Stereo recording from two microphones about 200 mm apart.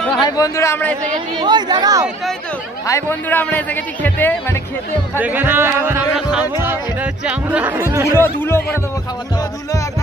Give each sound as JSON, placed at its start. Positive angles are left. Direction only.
{"t": 0.2, "sound": "a man's voice", "side_deg": 15}
{"t": 1.4, "sound": "speech", "side_deg": -20}
{"t": 2.9, "sound": "a man's voice", "side_deg": 10}
{"t": 5.2, "sound": "speech", "side_deg": -10}
{"t": 8.2, "sound": "a man's voice", "side_deg": 10}